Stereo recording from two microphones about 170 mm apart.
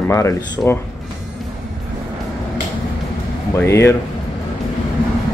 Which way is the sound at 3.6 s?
15° left (ahead or behind).